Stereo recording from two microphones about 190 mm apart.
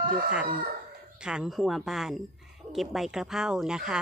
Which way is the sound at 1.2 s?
5° right (ahead or behind).